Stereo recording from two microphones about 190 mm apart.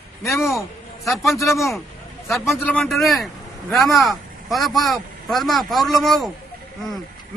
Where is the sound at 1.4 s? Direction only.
15° left (ahead or behind).